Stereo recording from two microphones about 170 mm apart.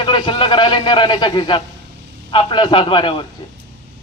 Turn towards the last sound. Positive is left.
turn(degrees=30)  # may be behind; listen again after turning